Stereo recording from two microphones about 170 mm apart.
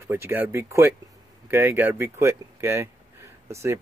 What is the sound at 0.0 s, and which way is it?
Speech, 15° right (ahead or behind).